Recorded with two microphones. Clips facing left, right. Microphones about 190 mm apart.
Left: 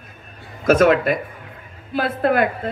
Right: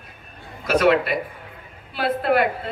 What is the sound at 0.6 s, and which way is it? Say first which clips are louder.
A man's voice: left 3 dB; 45° left (ahead or behind).